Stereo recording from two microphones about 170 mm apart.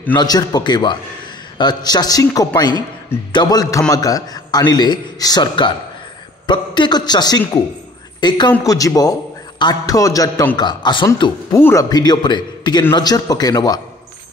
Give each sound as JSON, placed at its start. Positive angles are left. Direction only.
{"t": 0.1, "sound": "a man's voice", "side_deg": 25}
{"t": 11.5, "sound": "a man's voice", "side_deg": 15}